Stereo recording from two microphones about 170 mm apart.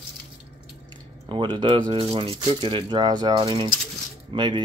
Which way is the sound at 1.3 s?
30° right (ahead or behind).